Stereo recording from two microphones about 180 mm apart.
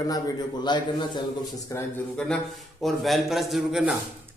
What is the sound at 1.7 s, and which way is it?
A man's voice, 5° left (ahead or behind).